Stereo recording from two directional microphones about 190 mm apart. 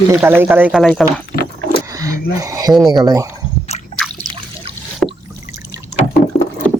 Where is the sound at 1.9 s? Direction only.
15° right (ahead or behind).